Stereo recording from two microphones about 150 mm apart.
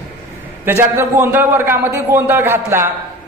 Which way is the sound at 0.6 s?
15° right (ahead or behind).